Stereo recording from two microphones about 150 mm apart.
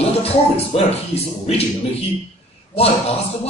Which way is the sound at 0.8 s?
45° left (ahead or behind).